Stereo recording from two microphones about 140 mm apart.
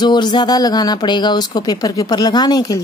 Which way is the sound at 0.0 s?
30° left (ahead or behind).